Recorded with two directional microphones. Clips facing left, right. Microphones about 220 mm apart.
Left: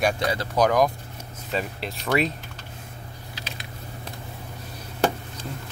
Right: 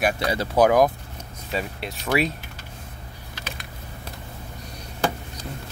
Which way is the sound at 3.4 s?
50° right (ahead or behind).